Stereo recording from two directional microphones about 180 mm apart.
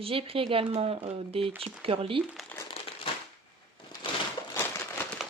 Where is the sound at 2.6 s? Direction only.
30° left (ahead or behind).